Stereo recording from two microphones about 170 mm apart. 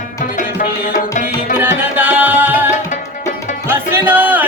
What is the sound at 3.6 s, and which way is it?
Music, 10° right (ahead or behind).